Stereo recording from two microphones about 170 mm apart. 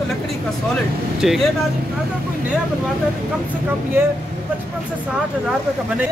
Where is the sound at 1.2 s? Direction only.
Centre (ahead or behind).